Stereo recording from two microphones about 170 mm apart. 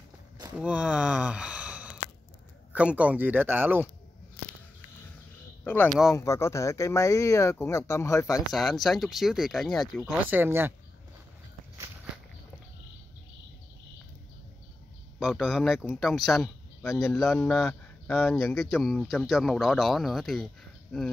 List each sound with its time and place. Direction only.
0.6 s speech: 5° right (ahead or behind)
5.6 s speech: 10° left (ahead or behind)
5.9 s speech: centre (ahead or behind)
6.1 s speech: 15° left (ahead or behind)
8.5 s speech: centre (ahead or behind)
10.3 s speech: 15° right (ahead or behind)
15.1 s speech: centre (ahead or behind)